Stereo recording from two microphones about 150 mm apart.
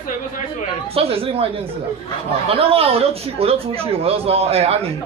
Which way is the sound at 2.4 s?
40° right (ahead or behind).